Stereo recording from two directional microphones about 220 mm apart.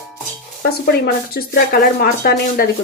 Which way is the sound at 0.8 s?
45° left (ahead or behind).